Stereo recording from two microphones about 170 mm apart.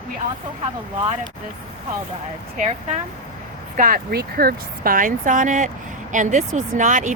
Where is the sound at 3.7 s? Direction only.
55° right (ahead or behind).